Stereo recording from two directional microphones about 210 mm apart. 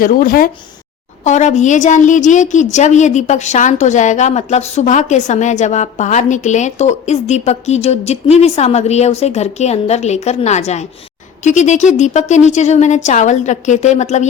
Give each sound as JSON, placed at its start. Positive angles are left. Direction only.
{"t": 0.0, "sound": "a woman's voice", "side_deg": 40}